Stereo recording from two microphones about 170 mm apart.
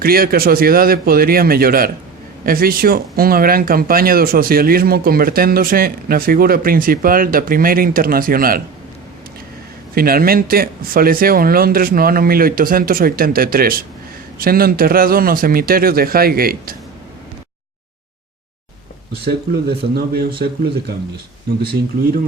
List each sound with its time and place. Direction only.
0.0 s speech: 60° right (ahead or behind)
9.9 s speech: 60° right (ahead or behind)
19.6 s speech: 70° right (ahead or behind)